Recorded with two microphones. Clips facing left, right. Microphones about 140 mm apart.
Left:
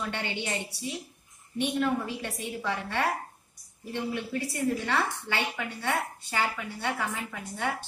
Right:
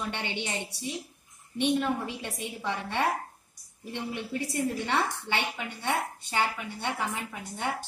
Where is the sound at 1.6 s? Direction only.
20° right (ahead or behind).